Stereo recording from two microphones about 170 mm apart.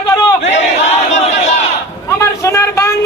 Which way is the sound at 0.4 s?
40° left (ahead or behind).